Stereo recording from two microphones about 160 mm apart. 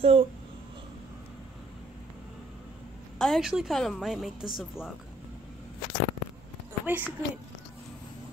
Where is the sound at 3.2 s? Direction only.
Centre (ahead or behind).